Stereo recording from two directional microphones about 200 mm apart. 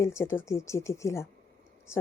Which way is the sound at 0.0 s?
15° left (ahead or behind).